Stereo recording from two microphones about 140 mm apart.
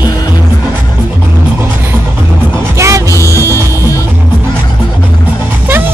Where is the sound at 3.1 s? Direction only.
20° left (ahead or behind).